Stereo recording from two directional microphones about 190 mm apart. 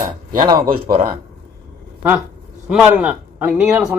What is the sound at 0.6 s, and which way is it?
Speech, 50° right (ahead or behind).